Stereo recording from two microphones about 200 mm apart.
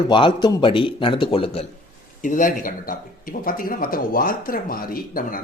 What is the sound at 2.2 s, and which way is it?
Speech, 40° left (ahead or behind).